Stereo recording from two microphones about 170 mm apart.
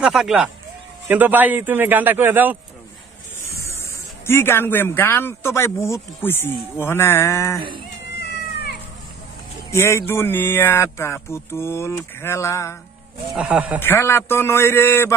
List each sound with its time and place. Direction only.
0.0 s a man's voice: 5° right (ahead or behind)
3.5 s spray: 15° left (ahead or behind)
4.3 s speech: 15° left (ahead or behind)
8.2 s cat: 70° left (ahead or behind)
9.7 s speech: 15° left (ahead or behind)
13.3 s a man's voice: 5° right (ahead or behind)
13.7 s speech: 15° left (ahead or behind)